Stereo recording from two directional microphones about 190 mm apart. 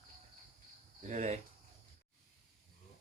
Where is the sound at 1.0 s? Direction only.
40° right (ahead or behind).